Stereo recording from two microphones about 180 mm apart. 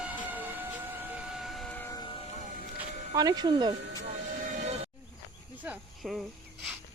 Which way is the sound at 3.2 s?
20° right (ahead or behind).